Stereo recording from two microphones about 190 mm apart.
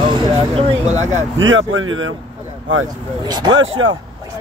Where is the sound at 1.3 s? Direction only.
90° right.